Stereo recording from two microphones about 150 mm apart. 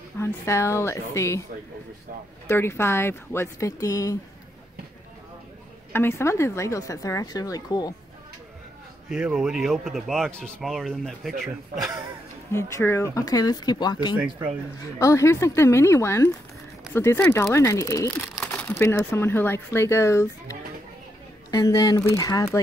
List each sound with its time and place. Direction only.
0.2 s speech: 20° left (ahead or behind)
2.4 s speech: 15° left (ahead or behind)
5.9 s speech: 15° left (ahead or behind)
9.1 s speech: 5° right (ahead or behind)
12.5 s speech: 20° left (ahead or behind)
14.1 s speech: 10° right (ahead or behind)
15.0 s speech: 20° left (ahead or behind)
18.2 s crumpling: 5° left (ahead or behind)
18.8 s speech: 15° left (ahead or behind)